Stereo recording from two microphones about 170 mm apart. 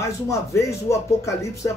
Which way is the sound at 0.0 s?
15° left (ahead or behind).